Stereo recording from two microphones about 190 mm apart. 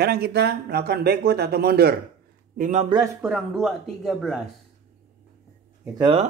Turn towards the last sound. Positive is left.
turn(degrees=-25)  # may be behind; listen again after turning